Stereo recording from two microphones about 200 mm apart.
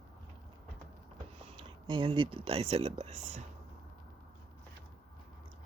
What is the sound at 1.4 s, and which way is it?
Speech, 25° right (ahead or behind).